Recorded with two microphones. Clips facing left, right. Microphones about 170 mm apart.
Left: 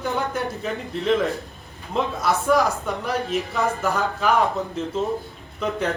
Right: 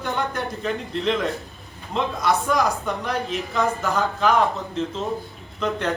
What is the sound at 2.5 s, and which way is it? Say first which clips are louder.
A man's voice: left 2 dB; 5° left (ahead or behind).